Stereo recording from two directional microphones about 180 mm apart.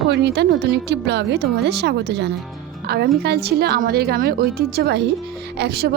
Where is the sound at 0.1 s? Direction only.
70° right (ahead or behind).